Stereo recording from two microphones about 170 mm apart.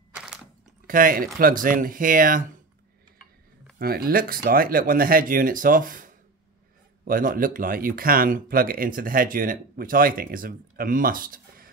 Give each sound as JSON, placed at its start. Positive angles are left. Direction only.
{"t": 0.8, "sound": "speech", "side_deg": -55}
{"t": 3.7, "sound": "speech", "side_deg": -60}